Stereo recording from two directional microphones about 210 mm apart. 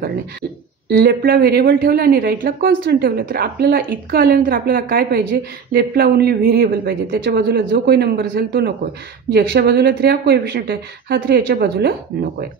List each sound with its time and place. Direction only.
0.8 s a woman's voice: 45° right (ahead or behind)